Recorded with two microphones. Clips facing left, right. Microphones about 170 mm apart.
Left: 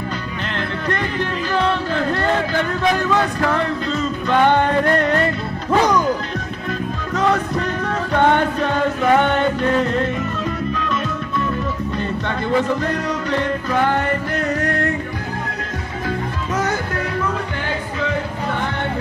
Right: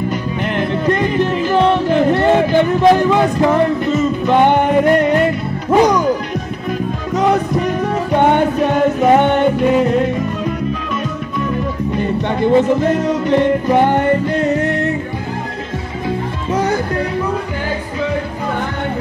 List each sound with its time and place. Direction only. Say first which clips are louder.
0.6 s music: right 7 dB; 15° right (ahead or behind)
7.2 s music: right 4 dB; 15° right (ahead or behind)
11.9 s music: right 5 dB; 15° right (ahead or behind)